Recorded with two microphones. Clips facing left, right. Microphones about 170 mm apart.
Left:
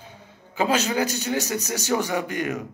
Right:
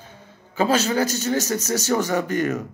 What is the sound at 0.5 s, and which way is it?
Speech, 15° left (ahead or behind).